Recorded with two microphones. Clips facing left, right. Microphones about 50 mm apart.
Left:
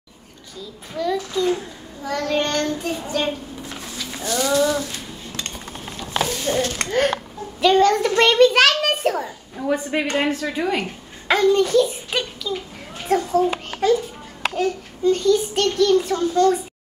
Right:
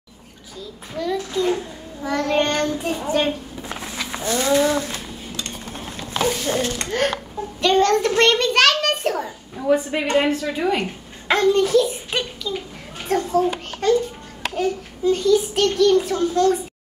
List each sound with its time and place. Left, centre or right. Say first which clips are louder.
1.0 s a child's voice: left 2 dB; centre
2.0 s child singing: right 2 dB; right
3.8 s a sound: right 4 dB; right
6.5 s a child's voice: left 5 dB; centre
6.9 s a child's voice: left 2 dB; centre